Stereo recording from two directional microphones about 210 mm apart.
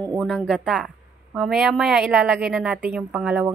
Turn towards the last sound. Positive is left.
turn(degrees=-5)  # may be behind; listen again after turning